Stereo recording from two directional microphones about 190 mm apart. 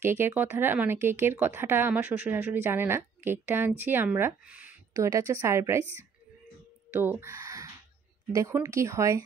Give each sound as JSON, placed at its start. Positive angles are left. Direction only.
{"t": 0.0, "sound": "speech", "side_deg": -10}
{"t": 6.9, "sound": "a sound", "side_deg": -10}
{"t": 8.3, "sound": "speech", "side_deg": -15}